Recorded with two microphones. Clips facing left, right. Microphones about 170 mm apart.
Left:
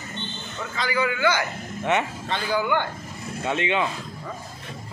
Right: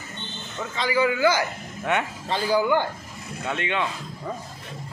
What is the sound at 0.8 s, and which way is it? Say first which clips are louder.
Speech: right 3 dB; 25° right (ahead or behind).